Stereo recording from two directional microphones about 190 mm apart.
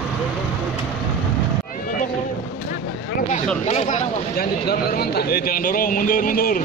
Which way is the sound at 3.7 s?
35° left (ahead or behind).